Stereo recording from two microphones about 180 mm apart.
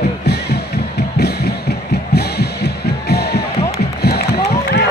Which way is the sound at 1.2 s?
65° left (ahead or behind).